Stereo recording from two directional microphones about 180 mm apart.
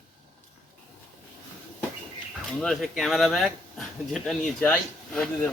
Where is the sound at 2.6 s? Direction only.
Centre (ahead or behind).